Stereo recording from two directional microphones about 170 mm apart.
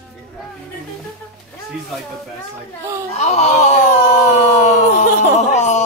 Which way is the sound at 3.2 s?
45° left (ahead or behind).